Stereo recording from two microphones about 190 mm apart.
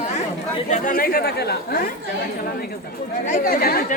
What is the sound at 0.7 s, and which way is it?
Chatter, 50° left (ahead or behind).